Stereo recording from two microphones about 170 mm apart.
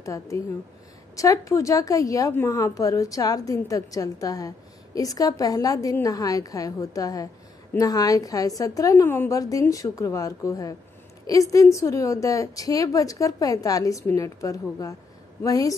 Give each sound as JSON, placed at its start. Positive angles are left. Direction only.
{"t": 0.0, "sound": "a woman's voice", "side_deg": 20}